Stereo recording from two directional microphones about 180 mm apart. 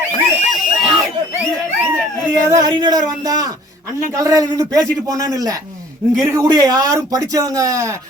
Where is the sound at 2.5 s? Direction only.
20° right (ahead or behind).